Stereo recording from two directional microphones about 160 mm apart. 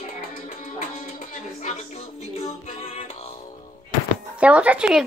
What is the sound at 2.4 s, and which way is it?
Music, 45° left (ahead or behind).